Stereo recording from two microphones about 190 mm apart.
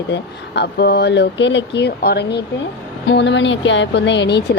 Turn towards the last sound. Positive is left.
turn(degrees=65)  # may be behind; listen again after turning